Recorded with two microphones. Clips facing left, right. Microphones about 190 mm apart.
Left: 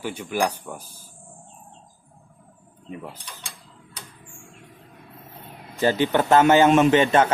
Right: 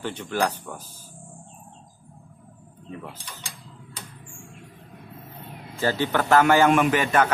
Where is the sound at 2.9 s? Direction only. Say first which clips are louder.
Left 2 dB; 15° left (ahead or behind).